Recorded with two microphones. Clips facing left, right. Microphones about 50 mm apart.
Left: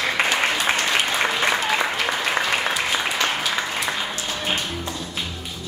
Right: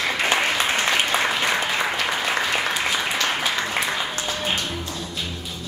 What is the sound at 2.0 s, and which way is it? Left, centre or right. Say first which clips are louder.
Applause: left 1 dB; centre.